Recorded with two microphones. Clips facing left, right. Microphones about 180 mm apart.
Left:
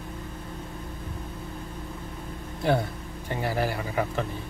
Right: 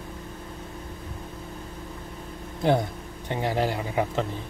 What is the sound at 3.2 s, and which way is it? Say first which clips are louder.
A man's voice: right 2 dB; 20° right (ahead or behind).